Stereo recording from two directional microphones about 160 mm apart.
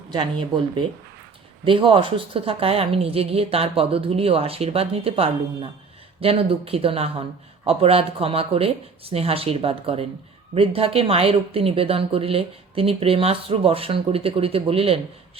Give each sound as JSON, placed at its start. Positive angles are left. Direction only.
{"t": 0.1, "sound": "speech", "side_deg": -30}
{"t": 1.6, "sound": "speech", "side_deg": -35}